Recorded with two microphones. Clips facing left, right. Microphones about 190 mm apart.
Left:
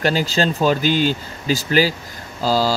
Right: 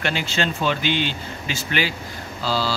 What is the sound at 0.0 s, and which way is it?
Speech, 40° left (ahead or behind).